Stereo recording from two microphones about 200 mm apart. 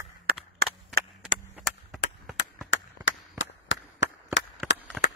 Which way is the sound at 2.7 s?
70° left (ahead or behind).